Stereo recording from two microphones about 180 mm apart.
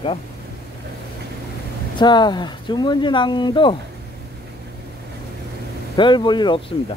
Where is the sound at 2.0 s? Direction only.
25° left (ahead or behind).